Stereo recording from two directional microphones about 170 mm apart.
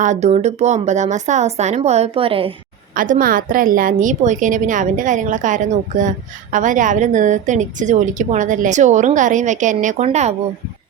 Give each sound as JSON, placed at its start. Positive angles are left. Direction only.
{"t": 0.0, "sound": "a woman's voice", "side_deg": -45}
{"t": 2.9, "sound": "a woman's voice", "side_deg": -55}